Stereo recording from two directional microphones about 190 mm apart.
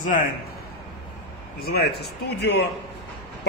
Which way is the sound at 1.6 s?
55° left (ahead or behind).